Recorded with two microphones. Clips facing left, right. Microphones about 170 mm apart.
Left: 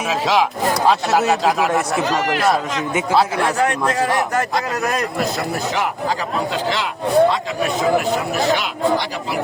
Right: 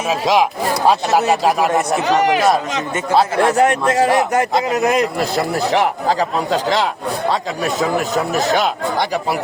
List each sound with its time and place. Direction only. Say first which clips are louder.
1.3 s speech: right 2 dB; 10° right (ahead or behind)
3.2 s a man's voice: right 5 dB; 25° right (ahead or behind)
5.7 s speech: right 5 dB; 35° right (ahead or behind)